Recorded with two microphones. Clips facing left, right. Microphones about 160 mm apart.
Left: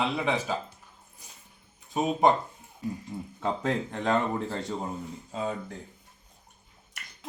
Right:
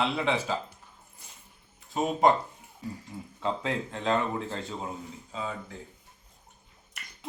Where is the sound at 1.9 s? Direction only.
20° left (ahead or behind).